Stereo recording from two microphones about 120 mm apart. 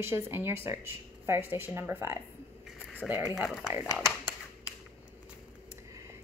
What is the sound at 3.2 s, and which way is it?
Speech, 5° right (ahead or behind).